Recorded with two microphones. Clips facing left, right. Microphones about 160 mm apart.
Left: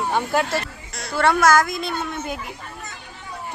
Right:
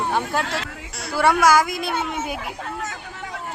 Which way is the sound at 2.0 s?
90° right.